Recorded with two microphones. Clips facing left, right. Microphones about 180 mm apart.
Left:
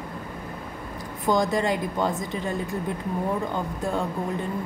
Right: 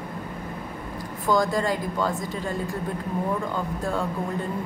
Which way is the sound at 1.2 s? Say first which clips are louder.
Even; 20° left (ahead or behind).